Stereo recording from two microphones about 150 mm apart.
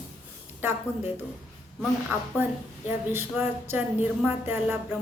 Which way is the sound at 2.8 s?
15° right (ahead or behind).